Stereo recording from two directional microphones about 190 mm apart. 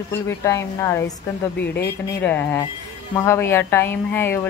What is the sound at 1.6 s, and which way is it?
Speech, 60° left (ahead or behind).